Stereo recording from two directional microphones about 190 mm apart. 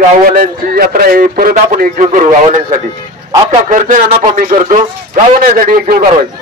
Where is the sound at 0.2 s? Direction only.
50° right (ahead or behind).